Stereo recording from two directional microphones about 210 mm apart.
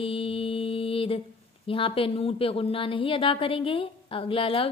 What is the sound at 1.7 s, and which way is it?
Speech, 25° left (ahead or behind).